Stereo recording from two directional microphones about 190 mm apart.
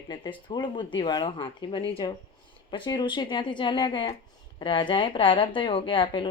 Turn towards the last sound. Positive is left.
turn(degrees=25)  # may be behind; listen again after turning